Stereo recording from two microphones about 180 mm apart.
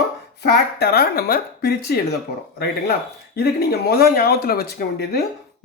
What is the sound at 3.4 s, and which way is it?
Speech, 60° left (ahead or behind).